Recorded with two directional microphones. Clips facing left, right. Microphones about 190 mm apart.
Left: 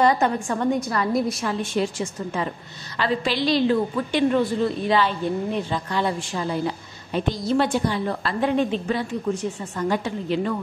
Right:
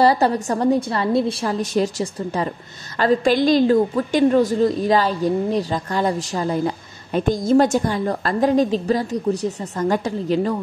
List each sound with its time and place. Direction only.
0.0 s a woman's voice: 35° right (ahead or behind)